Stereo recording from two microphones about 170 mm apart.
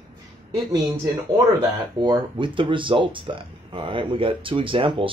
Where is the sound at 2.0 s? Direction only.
30° right (ahead or behind).